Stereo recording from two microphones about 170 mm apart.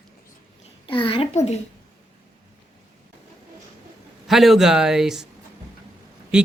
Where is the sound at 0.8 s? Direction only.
30° left (ahead or behind).